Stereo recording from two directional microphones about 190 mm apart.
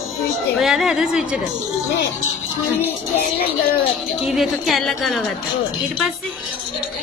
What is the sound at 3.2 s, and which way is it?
Speech, 50° left (ahead or behind).